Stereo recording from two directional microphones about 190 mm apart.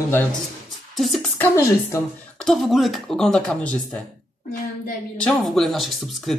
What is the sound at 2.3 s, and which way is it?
Speech, centre (ahead or behind).